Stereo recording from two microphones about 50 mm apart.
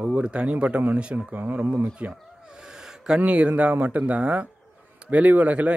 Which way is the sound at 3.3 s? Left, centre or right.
Right.